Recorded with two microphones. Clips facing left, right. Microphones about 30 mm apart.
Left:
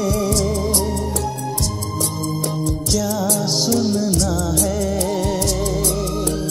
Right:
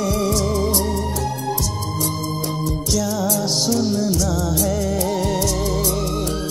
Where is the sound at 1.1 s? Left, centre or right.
Left.